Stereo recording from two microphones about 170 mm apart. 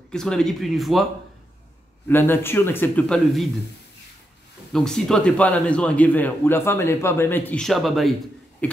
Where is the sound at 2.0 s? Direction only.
10° left (ahead or behind).